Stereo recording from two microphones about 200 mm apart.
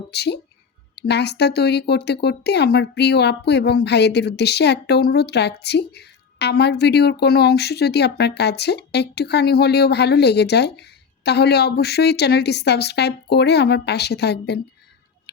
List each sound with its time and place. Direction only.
0.1 s speech: 55° left (ahead or behind)